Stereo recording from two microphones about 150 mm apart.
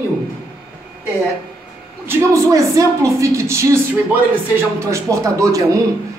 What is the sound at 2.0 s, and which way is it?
Speech, 20° right (ahead or behind).